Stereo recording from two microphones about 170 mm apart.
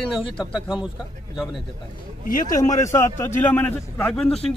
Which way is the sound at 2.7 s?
20° left (ahead or behind).